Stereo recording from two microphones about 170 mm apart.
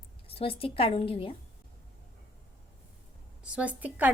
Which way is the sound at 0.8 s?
30° left (ahead or behind).